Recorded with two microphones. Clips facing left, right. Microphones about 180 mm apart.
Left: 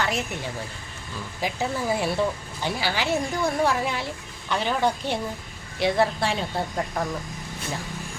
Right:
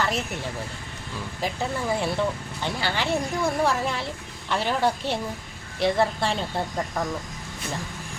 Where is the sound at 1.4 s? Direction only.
5° left (ahead or behind).